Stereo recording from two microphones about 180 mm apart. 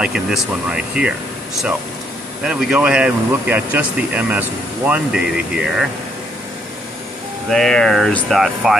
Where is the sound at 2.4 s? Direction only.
5° right (ahead or behind).